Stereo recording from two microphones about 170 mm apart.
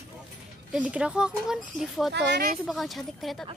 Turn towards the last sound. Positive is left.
turn(degrees=0)  # may be behind; listen again after turning